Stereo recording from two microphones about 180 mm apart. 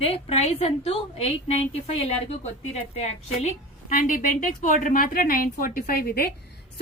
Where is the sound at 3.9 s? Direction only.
50° left (ahead or behind).